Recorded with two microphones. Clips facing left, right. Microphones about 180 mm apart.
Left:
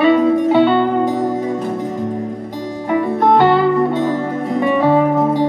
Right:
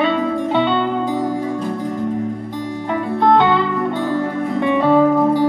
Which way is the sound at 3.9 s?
20° left (ahead or behind).